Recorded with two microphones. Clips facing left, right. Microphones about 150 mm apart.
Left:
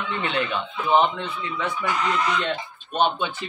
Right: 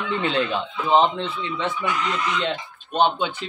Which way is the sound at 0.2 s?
30° right (ahead or behind).